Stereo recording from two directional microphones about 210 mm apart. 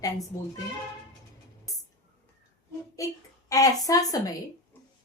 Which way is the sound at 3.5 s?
15° left (ahead or behind).